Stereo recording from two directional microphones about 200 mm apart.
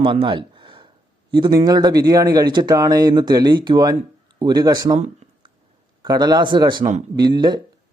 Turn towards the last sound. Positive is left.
turn(degrees=-20)  # may be behind; listen again after turning